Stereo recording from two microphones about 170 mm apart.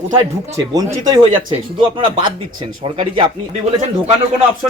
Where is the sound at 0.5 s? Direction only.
20° right (ahead or behind).